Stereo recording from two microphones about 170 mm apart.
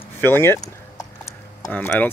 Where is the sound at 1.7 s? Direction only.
10° left (ahead or behind).